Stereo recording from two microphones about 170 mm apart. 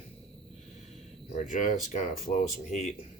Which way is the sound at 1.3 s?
50° left (ahead or behind).